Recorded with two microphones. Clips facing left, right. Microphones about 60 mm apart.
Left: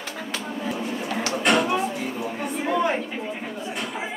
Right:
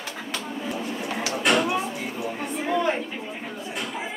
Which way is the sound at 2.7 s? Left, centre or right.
Centre.